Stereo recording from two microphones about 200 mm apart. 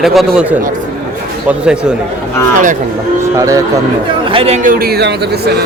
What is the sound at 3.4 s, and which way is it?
Speech, 15° right (ahead or behind).